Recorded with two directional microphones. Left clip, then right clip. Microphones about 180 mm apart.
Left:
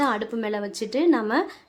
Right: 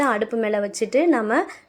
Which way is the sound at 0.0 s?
15° right (ahead or behind).